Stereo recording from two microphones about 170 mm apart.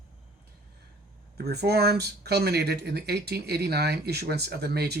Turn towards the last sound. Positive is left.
turn(degrees=-70)  # may be behind; listen again after turning